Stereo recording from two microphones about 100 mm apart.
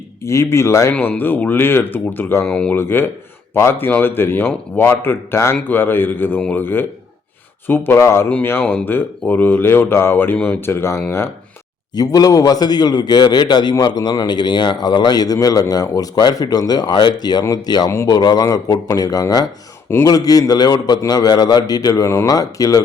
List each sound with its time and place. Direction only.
0.2 s a man's voice: 30° left (ahead or behind)
0.9 s a man's voice: 15° left (ahead or behind)
2.5 s speech: 10° left (ahead or behind)
2.7 s a man's voice: 20° left (ahead or behind)
11.9 s a man's voice: 40° left (ahead or behind)